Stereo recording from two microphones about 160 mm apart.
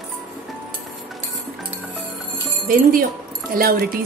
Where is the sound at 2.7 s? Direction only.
65° right (ahead or behind).